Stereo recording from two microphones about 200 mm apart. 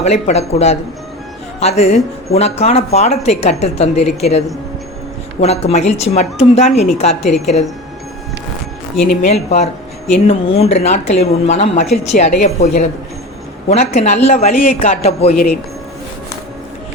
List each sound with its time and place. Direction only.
0.0 s a woman's voice: 35° left (ahead or behind)
9.0 s a woman's voice: 35° left (ahead or behind)